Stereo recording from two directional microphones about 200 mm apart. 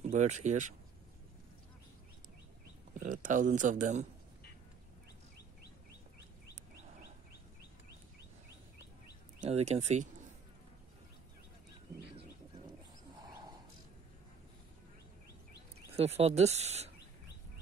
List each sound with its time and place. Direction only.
0.0 s speech: 35° right (ahead or behind)
3.0 s speech: 40° right (ahead or behind)
9.4 s speech: 30° right (ahead or behind)
13.3 s a sound: 20° right (ahead or behind)
16.0 s speech: 30° right (ahead or behind)